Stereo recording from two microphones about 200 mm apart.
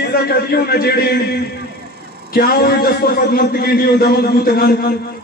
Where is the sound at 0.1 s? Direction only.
50° left (ahead or behind).